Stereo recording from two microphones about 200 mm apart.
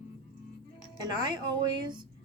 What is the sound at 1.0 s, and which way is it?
Speech, 20° right (ahead or behind).